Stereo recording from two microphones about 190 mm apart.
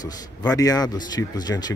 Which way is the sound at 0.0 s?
20° left (ahead or behind).